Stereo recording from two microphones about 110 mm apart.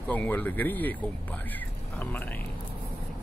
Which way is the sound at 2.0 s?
15° left (ahead or behind).